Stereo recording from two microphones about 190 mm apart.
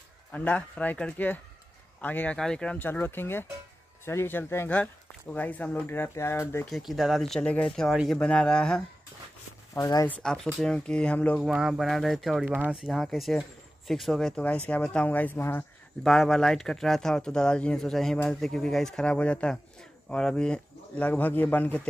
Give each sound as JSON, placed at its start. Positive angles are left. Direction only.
{"t": 0.3, "sound": "speech", "side_deg": 10}
{"t": 9.8, "sound": "speech", "side_deg": 20}
{"t": 10.2, "sound": "speech", "side_deg": 5}
{"t": 11.5, "sound": "speech", "side_deg": -5}